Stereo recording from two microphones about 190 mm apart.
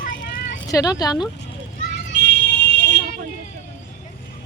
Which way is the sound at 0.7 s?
20° left (ahead or behind).